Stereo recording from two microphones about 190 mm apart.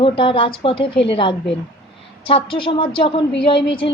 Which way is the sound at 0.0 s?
25° left (ahead or behind).